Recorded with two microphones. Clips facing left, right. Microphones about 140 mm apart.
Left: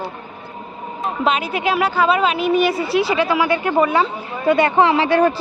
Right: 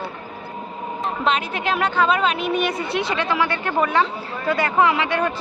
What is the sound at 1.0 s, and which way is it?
Speech, 5° left (ahead or behind).